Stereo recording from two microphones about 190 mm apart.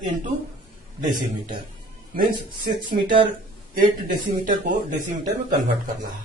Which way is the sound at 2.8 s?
25° right (ahead or behind).